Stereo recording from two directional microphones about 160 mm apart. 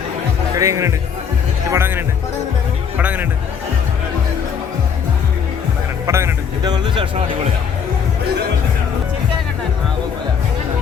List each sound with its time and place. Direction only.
0.5 s speech: 20° right (ahead or behind)
6.1 s speech: 15° right (ahead or behind)
6.6 s speech: 25° right (ahead or behind)